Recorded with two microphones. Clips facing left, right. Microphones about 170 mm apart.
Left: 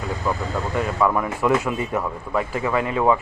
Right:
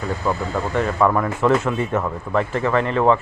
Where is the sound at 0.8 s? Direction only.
10° left (ahead or behind).